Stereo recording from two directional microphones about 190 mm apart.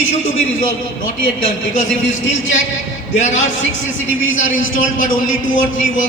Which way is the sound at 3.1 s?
40° left (ahead or behind).